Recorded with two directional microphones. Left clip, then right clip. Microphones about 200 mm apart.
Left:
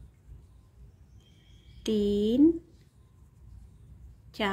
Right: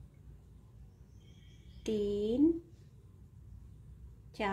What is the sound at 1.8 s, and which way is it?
Speech, 25° left (ahead or behind).